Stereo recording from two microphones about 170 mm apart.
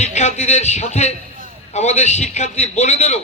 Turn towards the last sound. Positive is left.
turn(degrees=40)  # may be behind; listen again after turning